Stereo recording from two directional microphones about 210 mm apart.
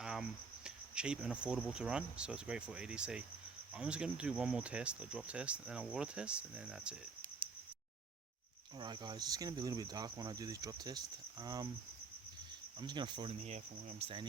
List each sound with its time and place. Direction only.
0.0 s cricket: 5° right (ahead or behind)
8.8 s speech: 20° right (ahead or behind)
12.8 s speech: 20° right (ahead or behind)